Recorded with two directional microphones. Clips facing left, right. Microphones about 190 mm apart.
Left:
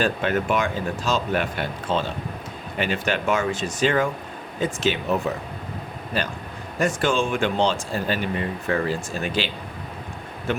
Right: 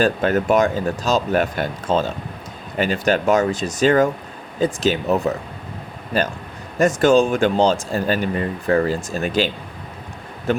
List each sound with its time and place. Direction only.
0.0 s speech: 40° right (ahead or behind)
10.5 s speech: 40° right (ahead or behind)